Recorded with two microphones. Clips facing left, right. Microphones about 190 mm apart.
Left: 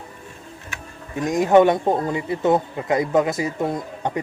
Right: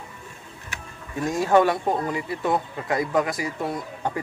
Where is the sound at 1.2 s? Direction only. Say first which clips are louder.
Left 4 dB; 20° left (ahead or behind).